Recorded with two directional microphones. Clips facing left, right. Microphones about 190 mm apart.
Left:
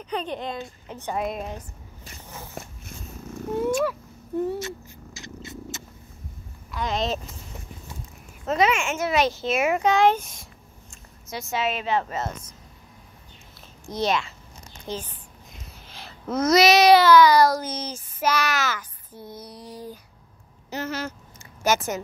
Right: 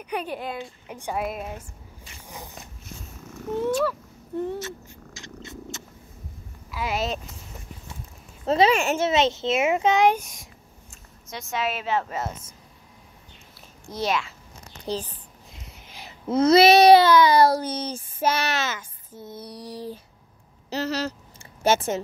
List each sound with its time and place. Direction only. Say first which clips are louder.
0.0 s a woman's voice: even; 10° right (ahead or behind)
2.2 s biting: right 1 dB; 15° right (ahead or behind)
3.6 s cat: even; 10° left (ahead or behind)
6.7 s speech: left 1 dB; 5° right (ahead or behind)
8.5 s a child's voice: right 3 dB; 30° right (ahead or behind); by 11.0 s 10° right (ahead or behind)
11.2 s a woman's voice: left 1 dB; 5° left (ahead or behind)
13.8 s a woman's voice: left 2 dB; 5° right (ahead or behind)
14.9 s a sound: right 3 dB; 35° right (ahead or behind)
15.5 s a sound: even; 20° right (ahead or behind)
16.3 s speech: right 3 dB; 30° right (ahead or behind)
20.7 s a sound: right 3 dB; 35° right (ahead or behind)
21.6 s speech: right 2 dB; 30° right (ahead or behind)